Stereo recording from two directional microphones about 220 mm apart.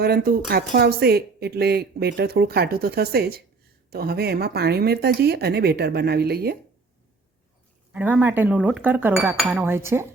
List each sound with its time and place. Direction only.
0.0 s speech: 45° right (ahead or behind)
7.9 s cutlery: 5° right (ahead or behind)